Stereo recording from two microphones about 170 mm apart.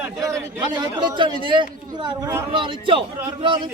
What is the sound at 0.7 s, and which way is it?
A man's voice, 25° right (ahead or behind).